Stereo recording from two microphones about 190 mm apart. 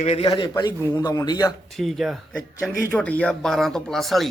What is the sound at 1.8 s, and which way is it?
Speech, centre (ahead or behind).